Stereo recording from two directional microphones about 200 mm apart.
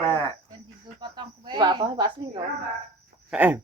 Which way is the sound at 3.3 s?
5° right (ahead or behind).